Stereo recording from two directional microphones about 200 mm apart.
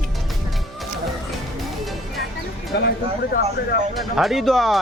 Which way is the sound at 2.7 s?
55° left (ahead or behind).